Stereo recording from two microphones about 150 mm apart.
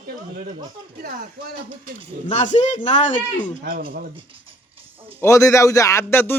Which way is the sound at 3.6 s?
80° right.